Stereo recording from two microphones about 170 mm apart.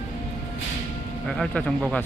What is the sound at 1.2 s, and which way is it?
Speech, 5° left (ahead or behind).